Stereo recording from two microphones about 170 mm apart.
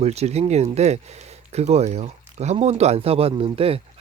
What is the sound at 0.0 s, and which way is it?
Speech, 40° right (ahead or behind).